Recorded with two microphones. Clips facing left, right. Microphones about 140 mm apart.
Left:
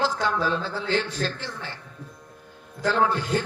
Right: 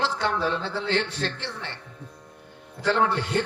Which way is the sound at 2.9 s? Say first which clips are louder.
Even; 70° right (ahead or behind).